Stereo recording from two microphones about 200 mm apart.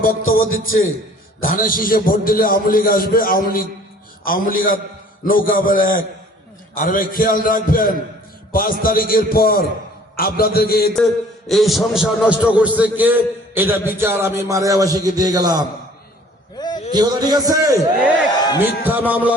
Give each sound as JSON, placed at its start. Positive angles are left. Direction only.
{"t": 1.4, "sound": "a man's voice", "side_deg": 45}
{"t": 10.9, "sound": "a man's voice", "side_deg": 0}
{"t": 16.6, "sound": "a sound", "side_deg": 20}
{"t": 16.9, "sound": "a man's voice", "side_deg": -20}